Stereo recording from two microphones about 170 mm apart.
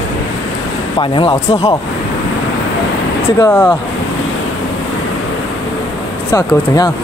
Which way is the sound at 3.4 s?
15° left (ahead or behind).